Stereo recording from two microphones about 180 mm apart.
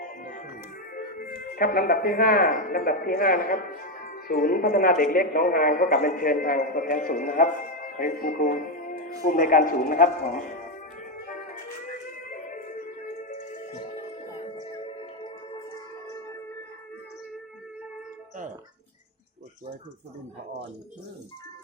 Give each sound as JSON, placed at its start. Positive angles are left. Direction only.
{"t": 0.3, "sound": "music", "side_deg": 50}
{"t": 0.9, "sound": "a man's voice", "side_deg": 50}
{"t": 12.3, "sound": "music", "side_deg": 45}
{"t": 14.6, "sound": "music", "side_deg": 30}